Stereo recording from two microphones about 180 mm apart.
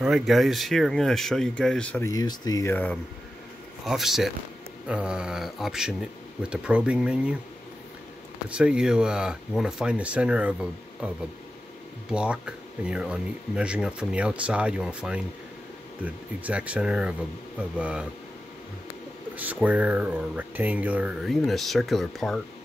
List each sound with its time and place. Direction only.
0.0 s speech: centre (ahead or behind)
2.0 s speech: 20° left (ahead or behind)
3.8 s speech: centre (ahead or behind)
8.5 s speech: 5° right (ahead or behind)
12.1 s speech: 5° right (ahead or behind)
19.3 s speech: 10° right (ahead or behind)